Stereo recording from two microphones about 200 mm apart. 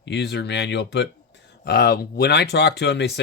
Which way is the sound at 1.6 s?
50° left (ahead or behind).